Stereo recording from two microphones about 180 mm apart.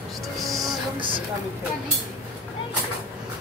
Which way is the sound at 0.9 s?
30° right (ahead or behind).